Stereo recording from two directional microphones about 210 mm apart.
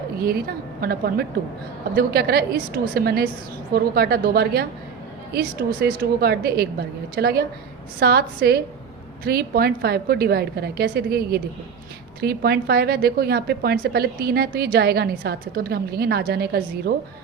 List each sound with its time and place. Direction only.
0.2 s a woman's voice: 45° right (ahead or behind)